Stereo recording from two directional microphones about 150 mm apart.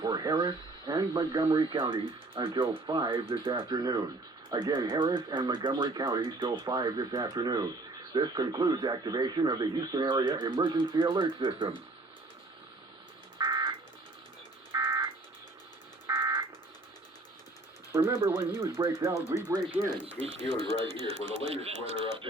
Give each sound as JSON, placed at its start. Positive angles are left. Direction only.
{"t": 0.0, "sound": "radio", "side_deg": -25}
{"t": 1.5, "sound": "speech", "side_deg": -40}
{"t": 13.4, "sound": "car alarm", "side_deg": -25}
{"t": 14.7, "sound": "a sound", "side_deg": -15}
{"t": 16.0, "sound": "car alarm", "side_deg": -15}
{"t": 17.9, "sound": "speech", "side_deg": -15}
{"t": 19.1, "sound": "speech", "side_deg": 20}
{"t": 19.8, "sound": "speech", "side_deg": -10}
{"t": 20.2, "sound": "speech", "side_deg": -40}